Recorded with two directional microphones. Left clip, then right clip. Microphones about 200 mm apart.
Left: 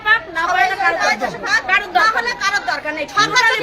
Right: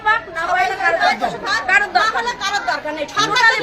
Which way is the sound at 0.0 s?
35° left (ahead or behind).